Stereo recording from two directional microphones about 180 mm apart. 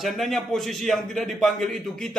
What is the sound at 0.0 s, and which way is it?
A man's voice, centre (ahead or behind).